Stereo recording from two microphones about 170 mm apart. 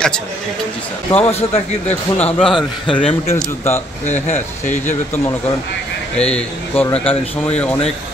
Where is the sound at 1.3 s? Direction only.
40° left (ahead or behind).